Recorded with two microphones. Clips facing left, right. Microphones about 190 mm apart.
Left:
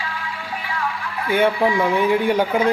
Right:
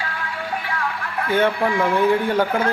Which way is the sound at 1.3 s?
10° left (ahead or behind).